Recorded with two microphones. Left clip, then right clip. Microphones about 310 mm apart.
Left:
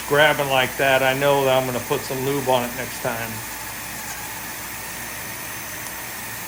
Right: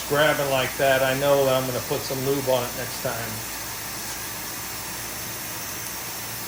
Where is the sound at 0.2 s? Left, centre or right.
Left.